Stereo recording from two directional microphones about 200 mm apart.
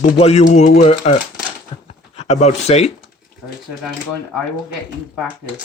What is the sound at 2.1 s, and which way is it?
Speech, 30° left (ahead or behind).